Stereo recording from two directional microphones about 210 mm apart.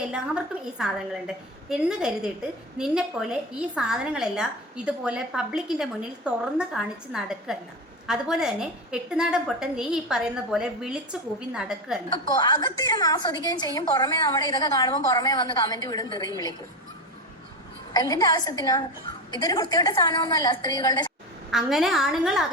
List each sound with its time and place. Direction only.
0.6 s a woman's voice: 5° right (ahead or behind)
12.1 s a woman's voice: 20° left (ahead or behind)
17.9 s a woman's voice: 20° left (ahead or behind)
21.5 s a woman's voice: centre (ahead or behind)